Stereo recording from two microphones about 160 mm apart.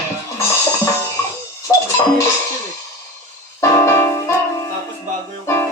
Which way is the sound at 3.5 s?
15° left (ahead or behind).